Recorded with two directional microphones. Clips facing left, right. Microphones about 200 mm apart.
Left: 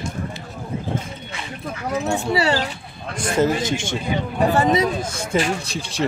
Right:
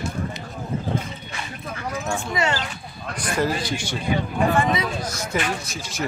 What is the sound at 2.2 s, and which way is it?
Speech, 35° left (ahead or behind).